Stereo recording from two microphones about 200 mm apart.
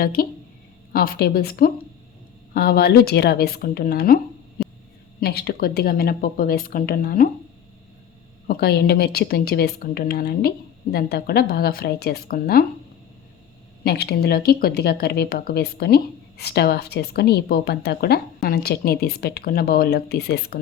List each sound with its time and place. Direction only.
0.0 s a woman's voice: 45° left (ahead or behind)
8.4 s a woman's voice: 50° left (ahead or behind)
13.8 s a woman's voice: 50° left (ahead or behind)